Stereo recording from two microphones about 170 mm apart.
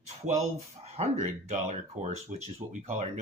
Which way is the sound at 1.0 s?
40° right (ahead or behind).